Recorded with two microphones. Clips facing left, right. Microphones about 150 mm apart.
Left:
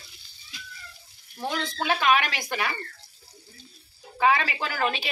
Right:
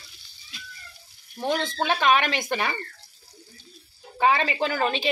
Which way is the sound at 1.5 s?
30° right (ahead or behind).